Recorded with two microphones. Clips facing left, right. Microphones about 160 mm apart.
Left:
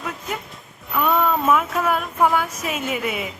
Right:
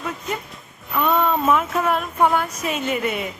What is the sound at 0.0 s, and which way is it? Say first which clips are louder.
Speech: right 2 dB; centre (ahead or behind).